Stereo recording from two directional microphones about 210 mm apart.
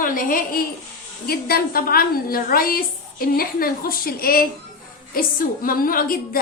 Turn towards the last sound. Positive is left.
turn(degrees=45)  # may be behind; listen again after turning